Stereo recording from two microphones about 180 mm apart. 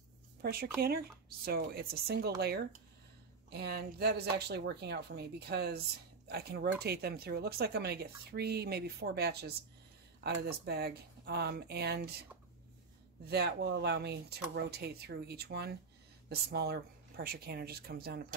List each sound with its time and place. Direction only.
0.4 s speech: 60° right (ahead or behind)